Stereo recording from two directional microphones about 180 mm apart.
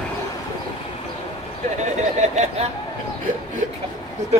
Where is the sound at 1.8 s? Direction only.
40° right (ahead or behind).